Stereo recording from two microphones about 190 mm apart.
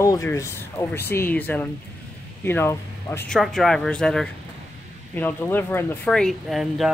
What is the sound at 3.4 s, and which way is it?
Speech, centre (ahead or behind).